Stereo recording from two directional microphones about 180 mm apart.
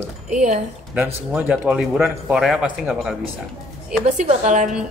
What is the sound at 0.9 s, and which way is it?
Speech, 10° right (ahead or behind).